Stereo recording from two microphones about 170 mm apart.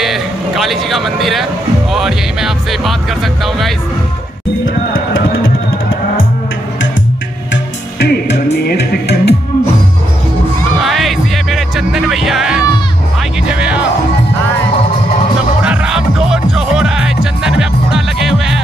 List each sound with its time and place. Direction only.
0.0 s a sound: centre (ahead or behind)
1.9 s speech: centre (ahead or behind)
8.0 s music: 85° left
10.9 s music: centre (ahead or behind)
15.6 s music: 5° right (ahead or behind)